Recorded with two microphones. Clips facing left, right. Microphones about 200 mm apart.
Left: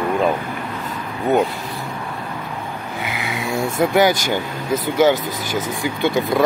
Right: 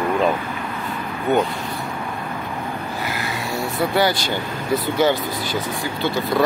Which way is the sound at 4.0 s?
15° left (ahead or behind).